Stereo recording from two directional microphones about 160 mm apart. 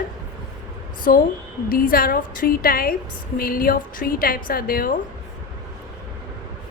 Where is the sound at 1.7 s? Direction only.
65° left (ahead or behind).